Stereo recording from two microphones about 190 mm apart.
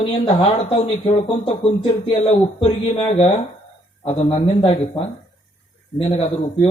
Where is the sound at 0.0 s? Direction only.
25° left (ahead or behind).